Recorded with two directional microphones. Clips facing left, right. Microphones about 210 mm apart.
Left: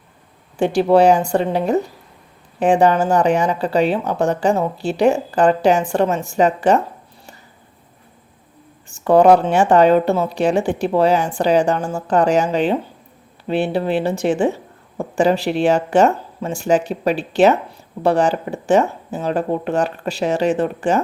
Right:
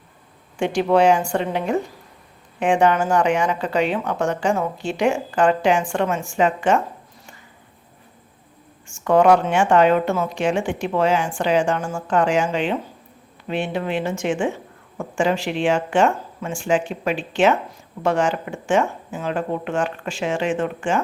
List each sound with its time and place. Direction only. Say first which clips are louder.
0.6 s a woman's voice: left 4 dB; 35° left (ahead or behind)
8.9 s a woman's voice: left 4 dB; 35° left (ahead or behind)